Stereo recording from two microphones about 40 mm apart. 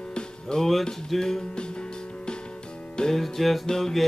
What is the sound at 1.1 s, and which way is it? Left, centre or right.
Music, centre.